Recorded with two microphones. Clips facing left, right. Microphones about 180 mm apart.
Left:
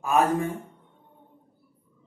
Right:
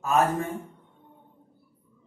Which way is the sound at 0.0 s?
15° left (ahead or behind).